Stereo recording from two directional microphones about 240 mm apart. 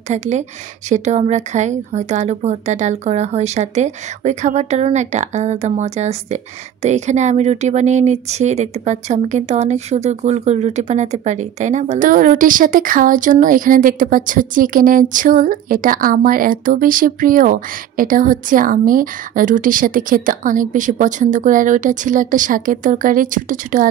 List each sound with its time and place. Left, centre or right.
0.1 s a woman's voice: right